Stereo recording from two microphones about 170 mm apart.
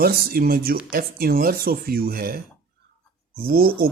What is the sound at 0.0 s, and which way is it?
Speech, 65° right (ahead or behind).